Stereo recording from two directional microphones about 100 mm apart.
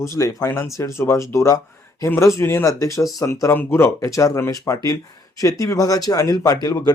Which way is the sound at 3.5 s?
25° left (ahead or behind).